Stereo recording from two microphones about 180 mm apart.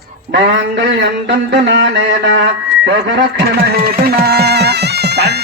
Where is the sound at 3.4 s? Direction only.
60° right (ahead or behind).